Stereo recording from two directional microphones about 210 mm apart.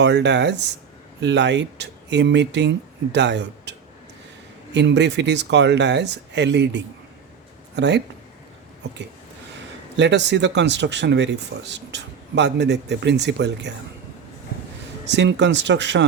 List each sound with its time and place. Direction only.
0.0 s speech: 55° right (ahead or behind)
10.0 s speech: 55° right (ahead or behind)
15.1 s speech: 55° right (ahead or behind)